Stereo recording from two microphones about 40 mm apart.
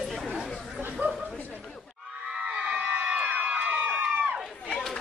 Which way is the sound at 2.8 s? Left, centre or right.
Right.